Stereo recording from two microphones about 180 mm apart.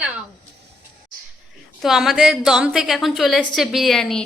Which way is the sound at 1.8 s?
Centre (ahead or behind).